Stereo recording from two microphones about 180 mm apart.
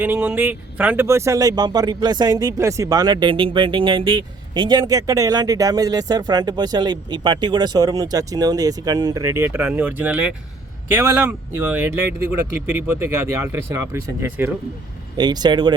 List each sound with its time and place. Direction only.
0.0 s speech: 10° right (ahead or behind)
15.2 s speech: 25° right (ahead or behind)